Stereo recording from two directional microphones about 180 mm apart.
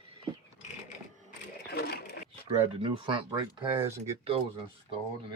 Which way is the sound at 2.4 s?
30° right (ahead or behind).